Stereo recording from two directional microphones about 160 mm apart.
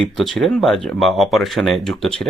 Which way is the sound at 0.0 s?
5° left (ahead or behind).